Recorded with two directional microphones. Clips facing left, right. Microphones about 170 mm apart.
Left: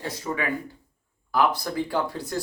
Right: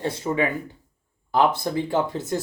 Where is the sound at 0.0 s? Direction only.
25° right (ahead or behind).